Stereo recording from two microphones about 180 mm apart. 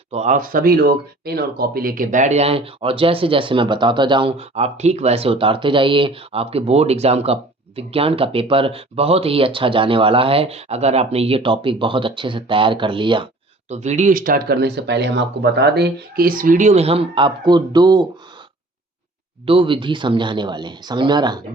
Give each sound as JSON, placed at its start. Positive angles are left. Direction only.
{"t": 0.1, "sound": "speech", "side_deg": -40}
{"t": 13.7, "sound": "speech", "side_deg": -40}
{"t": 19.5, "sound": "speech", "side_deg": -30}